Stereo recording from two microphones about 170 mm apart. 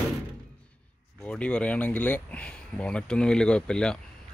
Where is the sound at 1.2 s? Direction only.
5° left (ahead or behind).